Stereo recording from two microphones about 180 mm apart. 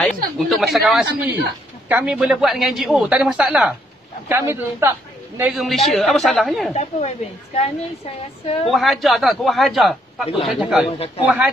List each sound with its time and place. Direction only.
0.0 s a man's voice: centre (ahead or behind)
5.4 s a man's voice: centre (ahead or behind)
6.7 s a woman's voice: 35° left (ahead or behind)
8.6 s a man's voice: centre (ahead or behind)
10.9 s a woman's voice: 35° left (ahead or behind)
11.2 s a man's voice: 5° right (ahead or behind)